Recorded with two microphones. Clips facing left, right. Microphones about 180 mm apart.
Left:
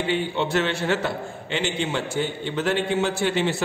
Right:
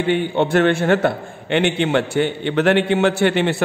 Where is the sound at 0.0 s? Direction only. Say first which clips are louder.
Right 6 dB; 55° right (ahead or behind).